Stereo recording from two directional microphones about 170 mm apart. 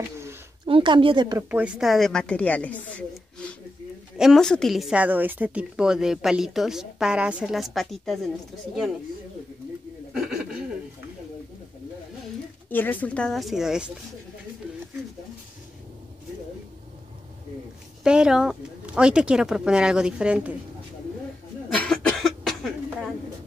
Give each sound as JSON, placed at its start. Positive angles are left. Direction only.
{"t": 0.7, "sound": "speech", "side_deg": -30}
{"t": 1.5, "sound": "a woman's voice", "side_deg": -5}
{"t": 10.1, "sound": "chuckle", "side_deg": -5}
{"t": 12.6, "sound": "a woman's voice", "side_deg": 10}
{"t": 18.0, "sound": "a woman's voice", "side_deg": -5}
{"t": 21.7, "sound": "cough", "side_deg": 5}